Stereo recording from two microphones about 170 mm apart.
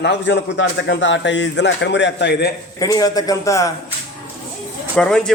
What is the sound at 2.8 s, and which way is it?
Speech, 20° left (ahead or behind).